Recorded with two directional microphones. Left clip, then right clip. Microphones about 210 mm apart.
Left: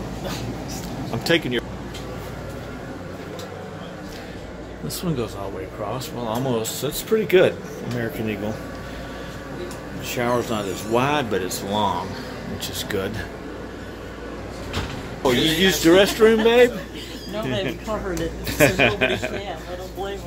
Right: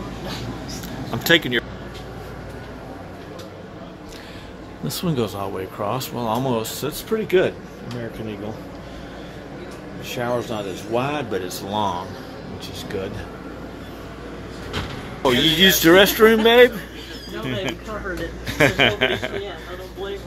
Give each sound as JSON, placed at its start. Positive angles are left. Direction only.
{"t": 1.1, "sound": "speech", "side_deg": -5}
{"t": 4.8, "sound": "a man's voice", "side_deg": -15}
{"t": 10.0, "sound": "speech", "side_deg": 5}
{"t": 15.2, "sound": "a man's voice", "side_deg": -5}
{"t": 18.6, "sound": "speech", "side_deg": 0}